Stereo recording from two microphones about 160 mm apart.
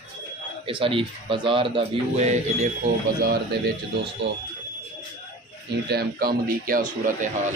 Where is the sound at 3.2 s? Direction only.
80° right.